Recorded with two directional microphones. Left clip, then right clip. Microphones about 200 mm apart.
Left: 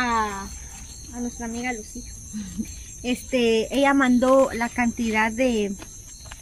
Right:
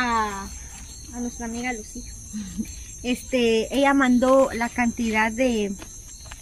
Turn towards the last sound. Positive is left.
turn(degrees=10)  # may be behind; listen again after turning